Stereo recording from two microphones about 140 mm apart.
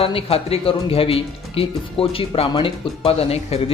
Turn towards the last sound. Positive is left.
turn(degrees=45)  # may be behind; listen again after turning